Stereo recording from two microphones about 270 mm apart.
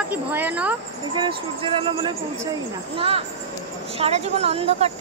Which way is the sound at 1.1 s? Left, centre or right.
Centre.